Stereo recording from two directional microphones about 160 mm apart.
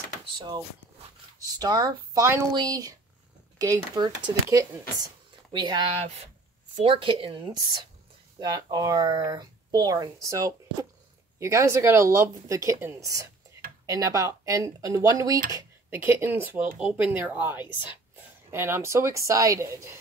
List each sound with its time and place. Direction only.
1.4 s a woman's voice: 25° right (ahead or behind)